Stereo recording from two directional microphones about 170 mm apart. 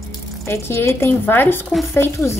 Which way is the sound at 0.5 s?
15° left (ahead or behind).